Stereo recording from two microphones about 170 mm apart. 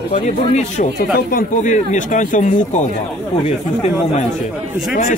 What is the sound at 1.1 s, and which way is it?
A man's voice, 50° left (ahead or behind).